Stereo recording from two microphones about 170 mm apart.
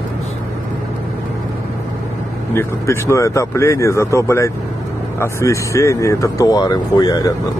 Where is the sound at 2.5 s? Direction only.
15° left (ahead or behind).